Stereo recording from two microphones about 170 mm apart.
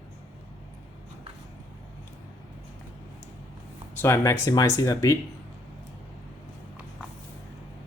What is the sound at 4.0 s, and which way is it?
Speech, 15° left (ahead or behind).